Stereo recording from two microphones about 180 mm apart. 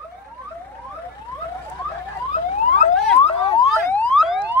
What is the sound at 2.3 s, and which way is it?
Emergency vehicle, 40° left (ahead or behind).